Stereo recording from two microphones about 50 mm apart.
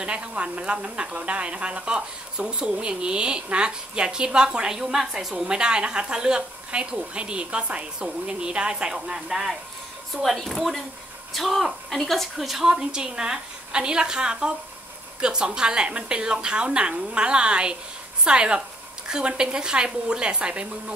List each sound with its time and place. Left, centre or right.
0.0 s speech: right
10.2 s a woman's voice: centre; by 20.6 s right